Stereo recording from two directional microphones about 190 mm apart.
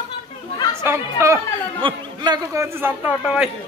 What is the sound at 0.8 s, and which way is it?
Speech, 15° right (ahead or behind).